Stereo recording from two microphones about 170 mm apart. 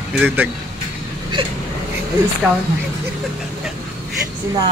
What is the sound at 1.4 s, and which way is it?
Speech, 30° right (ahead or behind).